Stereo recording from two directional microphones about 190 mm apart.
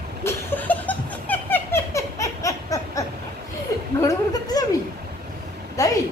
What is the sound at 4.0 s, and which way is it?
Speech, 20° left (ahead or behind).